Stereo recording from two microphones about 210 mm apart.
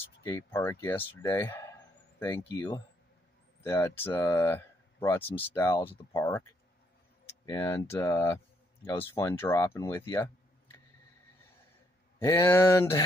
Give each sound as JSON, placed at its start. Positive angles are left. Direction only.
{"t": 0.2, "sound": "speech", "side_deg": 15}
{"t": 7.2, "sound": "tick", "side_deg": 15}
{"t": 7.9, "sound": "speech", "side_deg": 15}
{"t": 12.2, "sound": "speech", "side_deg": 10}